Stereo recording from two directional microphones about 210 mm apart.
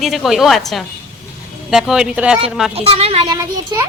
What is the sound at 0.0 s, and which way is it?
Speech, centre (ahead or behind).